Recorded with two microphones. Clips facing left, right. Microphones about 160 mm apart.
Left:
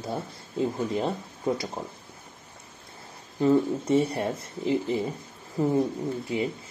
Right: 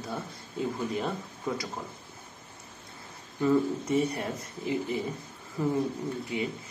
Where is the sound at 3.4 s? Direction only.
30° left (ahead or behind).